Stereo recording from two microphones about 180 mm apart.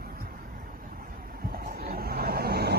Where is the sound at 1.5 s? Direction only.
55° right (ahead or behind).